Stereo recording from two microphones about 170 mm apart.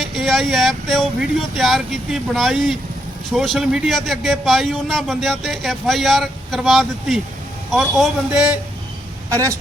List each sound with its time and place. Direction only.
0.0 s a man's voice: centre (ahead or behind)
9.3 s a woman's voice: 20° right (ahead or behind)